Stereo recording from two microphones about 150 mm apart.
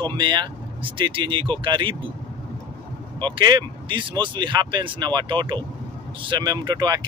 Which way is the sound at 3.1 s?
30° right (ahead or behind).